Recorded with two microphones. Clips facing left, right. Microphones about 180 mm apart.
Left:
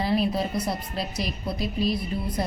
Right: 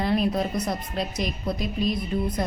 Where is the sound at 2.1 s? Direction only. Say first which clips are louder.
Right 4 dB; 55° right (ahead or behind).